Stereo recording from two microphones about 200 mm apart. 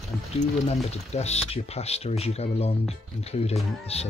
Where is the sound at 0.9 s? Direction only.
30° left (ahead or behind).